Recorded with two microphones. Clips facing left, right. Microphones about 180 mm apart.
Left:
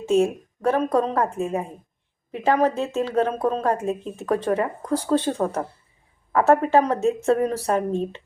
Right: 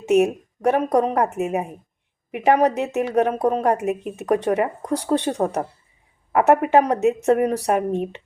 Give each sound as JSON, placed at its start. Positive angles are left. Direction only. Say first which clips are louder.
{"t": 0.0, "sound": "a woman's voice", "louder": "right 2 dB", "side_deg": -20}